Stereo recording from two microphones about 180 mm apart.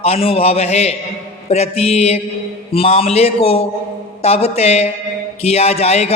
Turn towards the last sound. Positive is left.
turn(degrees=35)  # may be behind; listen again after turning